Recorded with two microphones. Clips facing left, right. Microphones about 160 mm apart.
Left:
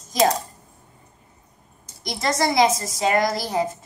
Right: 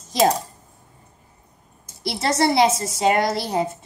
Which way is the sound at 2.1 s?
30° right (ahead or behind).